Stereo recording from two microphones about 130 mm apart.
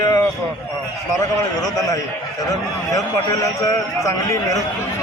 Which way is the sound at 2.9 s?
25° left (ahead or behind).